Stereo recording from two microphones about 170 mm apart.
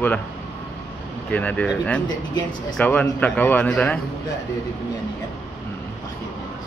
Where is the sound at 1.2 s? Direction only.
10° left (ahead or behind).